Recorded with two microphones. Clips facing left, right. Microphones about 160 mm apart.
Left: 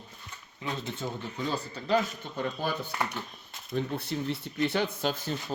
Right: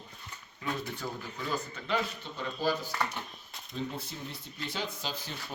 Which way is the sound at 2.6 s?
60° left (ahead or behind).